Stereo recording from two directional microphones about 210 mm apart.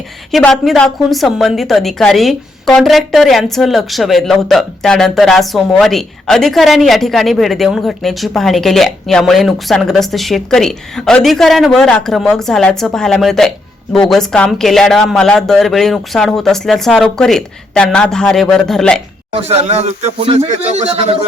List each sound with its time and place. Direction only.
0.3 s a woman's voice: centre (ahead or behind)
19.3 s speech: 30° right (ahead or behind)